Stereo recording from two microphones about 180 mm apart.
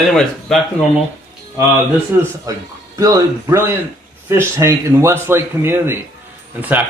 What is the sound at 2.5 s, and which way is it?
Speech, 20° right (ahead or behind).